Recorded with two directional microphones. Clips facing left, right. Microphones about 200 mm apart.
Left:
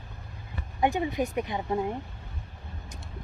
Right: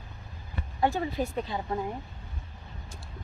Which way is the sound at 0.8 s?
15° left (ahead or behind).